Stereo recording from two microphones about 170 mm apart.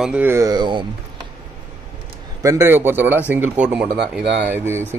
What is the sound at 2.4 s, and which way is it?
A man's voice, 15° right (ahead or behind).